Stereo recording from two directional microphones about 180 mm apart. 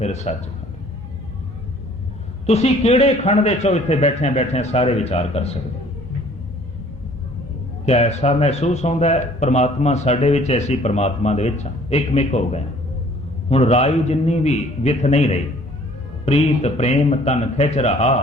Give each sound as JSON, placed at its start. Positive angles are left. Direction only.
{"t": 0.0, "sound": "speech", "side_deg": 40}
{"t": 2.5, "sound": "speech", "side_deg": 35}
{"t": 7.9, "sound": "speech", "side_deg": 35}